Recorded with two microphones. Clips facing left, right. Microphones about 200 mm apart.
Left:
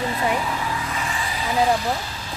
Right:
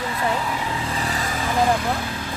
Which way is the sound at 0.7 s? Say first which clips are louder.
Right 2 dB; 35° right (ahead or behind).